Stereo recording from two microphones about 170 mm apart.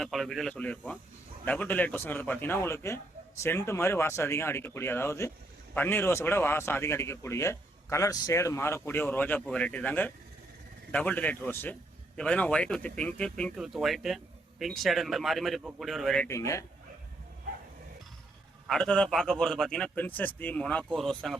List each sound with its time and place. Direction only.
0.0 s a man's voice: centre (ahead or behind)
16.2 s speech: 15° left (ahead or behind)
18.7 s a man's voice: 5° left (ahead or behind)